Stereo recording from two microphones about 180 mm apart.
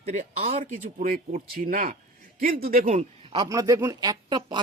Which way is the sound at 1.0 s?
45° right (ahead or behind).